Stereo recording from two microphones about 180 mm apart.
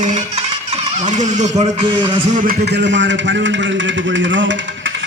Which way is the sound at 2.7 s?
75° right (ahead or behind).